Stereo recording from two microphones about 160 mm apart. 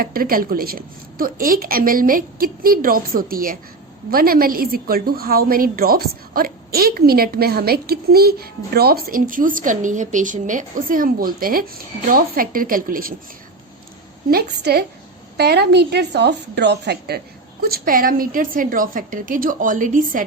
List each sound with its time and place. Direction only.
0.0 s a woman's voice: 65° right (ahead or behind)
14.3 s a woman's voice: 75° right (ahead or behind)
17.6 s a woman's voice: 70° right (ahead or behind)